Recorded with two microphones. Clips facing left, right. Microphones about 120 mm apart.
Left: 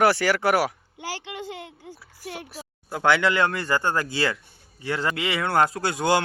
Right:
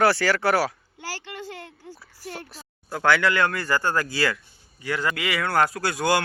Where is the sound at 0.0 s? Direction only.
15° left (ahead or behind).